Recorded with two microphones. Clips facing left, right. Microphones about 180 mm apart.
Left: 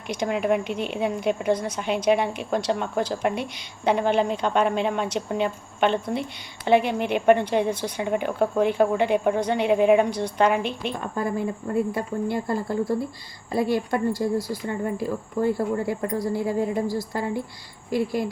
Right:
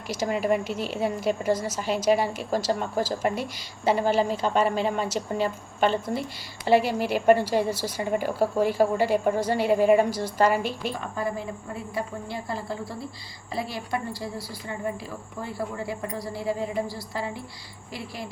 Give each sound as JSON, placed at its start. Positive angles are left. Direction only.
{"t": 0.1, "sound": "a woman's voice", "side_deg": -5}
{"t": 11.2, "sound": "a woman's voice", "side_deg": 50}